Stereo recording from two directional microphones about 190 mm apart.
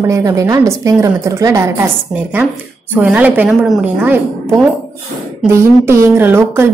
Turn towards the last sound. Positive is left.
turn(degrees=-15)  # may be behind; listen again after turning